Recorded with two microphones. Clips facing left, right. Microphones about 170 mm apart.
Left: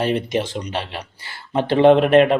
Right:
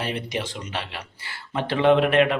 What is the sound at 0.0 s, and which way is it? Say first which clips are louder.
Speech: left 8 dB; 40° left (ahead or behind).